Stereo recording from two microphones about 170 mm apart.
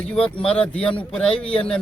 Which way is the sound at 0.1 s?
5° left (ahead or behind).